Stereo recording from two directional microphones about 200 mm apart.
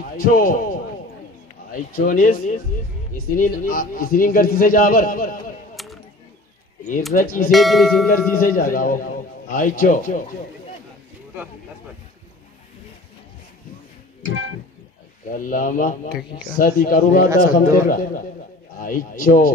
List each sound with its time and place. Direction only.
0.2 s a man's voice: 45° left (ahead or behind)
5.8 s a sound: centre (ahead or behind)
7.2 s a man's voice: 45° left (ahead or behind)
7.5 s speech: centre (ahead or behind)
8.4 s a man's voice: 45° left (ahead or behind)
15.3 s a man's voice: 40° left (ahead or behind)